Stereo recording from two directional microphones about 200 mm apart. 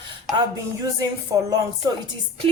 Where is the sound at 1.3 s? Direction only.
20° right (ahead or behind).